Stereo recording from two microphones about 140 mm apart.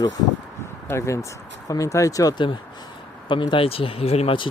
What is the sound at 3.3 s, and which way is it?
Speech, 35° left (ahead or behind).